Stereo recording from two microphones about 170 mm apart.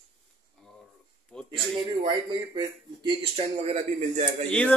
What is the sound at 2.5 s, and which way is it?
Speech, 30° right (ahead or behind).